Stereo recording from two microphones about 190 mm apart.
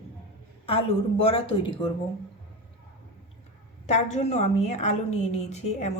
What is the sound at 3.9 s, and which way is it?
A woman's voice, 35° left (ahead or behind).